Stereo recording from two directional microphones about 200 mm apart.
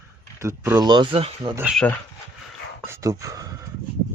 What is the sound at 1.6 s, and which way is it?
Speech, 5° right (ahead or behind).